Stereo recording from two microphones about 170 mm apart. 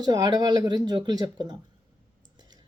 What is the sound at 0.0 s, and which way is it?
A woman's voice, 25° right (ahead or behind).